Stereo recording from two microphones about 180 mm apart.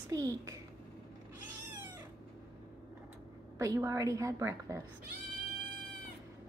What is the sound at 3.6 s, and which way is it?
Speech, 15° right (ahead or behind).